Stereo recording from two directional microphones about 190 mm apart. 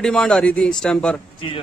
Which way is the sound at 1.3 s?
25° left (ahead or behind).